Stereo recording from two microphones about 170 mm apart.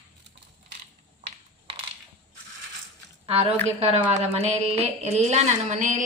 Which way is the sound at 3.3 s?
35° right (ahead or behind).